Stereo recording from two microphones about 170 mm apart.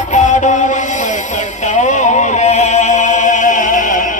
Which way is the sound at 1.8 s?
45° left (ahead or behind).